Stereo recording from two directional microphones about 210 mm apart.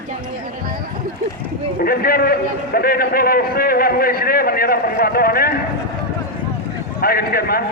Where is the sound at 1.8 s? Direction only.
45° left (ahead or behind).